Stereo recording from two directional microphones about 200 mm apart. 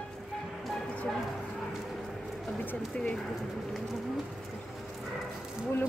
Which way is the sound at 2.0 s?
Centre (ahead or behind).